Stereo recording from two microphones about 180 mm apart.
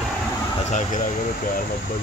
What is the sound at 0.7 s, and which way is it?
Speech, 45° left (ahead or behind).